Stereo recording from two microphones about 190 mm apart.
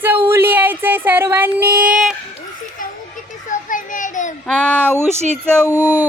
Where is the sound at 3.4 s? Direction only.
45° left (ahead or behind).